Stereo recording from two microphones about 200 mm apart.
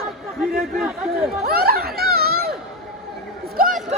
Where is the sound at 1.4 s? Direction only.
50° right (ahead or behind).